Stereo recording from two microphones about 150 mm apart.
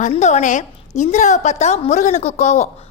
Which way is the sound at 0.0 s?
50° left (ahead or behind).